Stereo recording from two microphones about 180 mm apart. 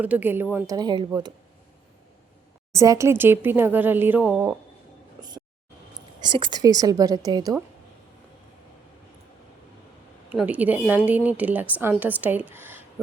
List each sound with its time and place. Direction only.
0.0 s a woman's voice: 10° right (ahead or behind)
2.7 s a woman's voice: 20° right (ahead or behind)
6.1 s a woman's voice: 25° right (ahead or behind)
10.3 s a woman's voice: 10° right (ahead or behind)